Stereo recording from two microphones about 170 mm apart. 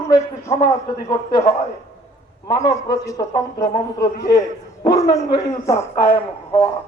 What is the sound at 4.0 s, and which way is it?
Speech, 70° left (ahead or behind).